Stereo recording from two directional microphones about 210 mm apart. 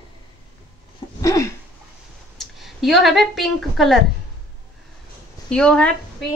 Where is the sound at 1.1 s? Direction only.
15° left (ahead or behind).